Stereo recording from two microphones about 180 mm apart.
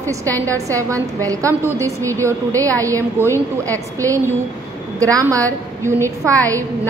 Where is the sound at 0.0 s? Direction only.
15° right (ahead or behind).